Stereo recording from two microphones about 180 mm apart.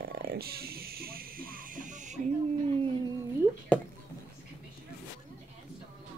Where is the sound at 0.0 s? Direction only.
60° right (ahead or behind).